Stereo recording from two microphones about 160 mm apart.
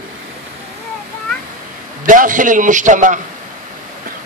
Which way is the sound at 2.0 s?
55° right (ahead or behind).